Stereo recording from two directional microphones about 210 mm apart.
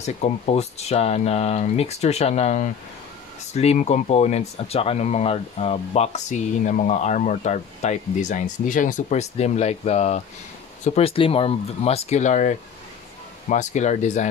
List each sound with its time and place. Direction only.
0.0 s speech: 30° left (ahead or behind)